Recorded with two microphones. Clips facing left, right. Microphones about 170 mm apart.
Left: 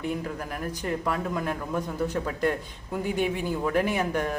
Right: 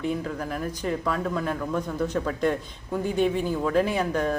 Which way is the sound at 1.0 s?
10° left (ahead or behind).